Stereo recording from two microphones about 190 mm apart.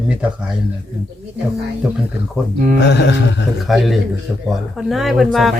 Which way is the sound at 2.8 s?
65° left (ahead or behind).